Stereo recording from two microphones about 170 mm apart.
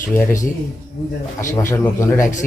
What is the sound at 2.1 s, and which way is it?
Speech, 45° left (ahead or behind).